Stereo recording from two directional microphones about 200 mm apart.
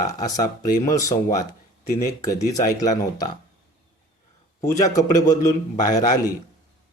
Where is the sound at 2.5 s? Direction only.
15° left (ahead or behind).